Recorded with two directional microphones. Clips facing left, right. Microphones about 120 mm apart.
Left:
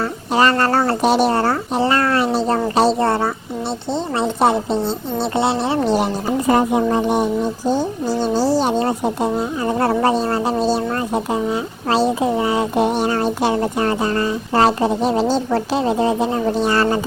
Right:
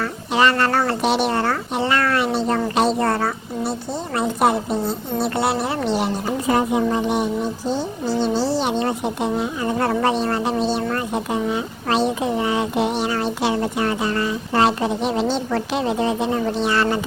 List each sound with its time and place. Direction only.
0.0 s a woman's voice: 40° left (ahead or behind)
5.8 s speech: 45° left (ahead or behind)
12.8 s speech: 45° left (ahead or behind)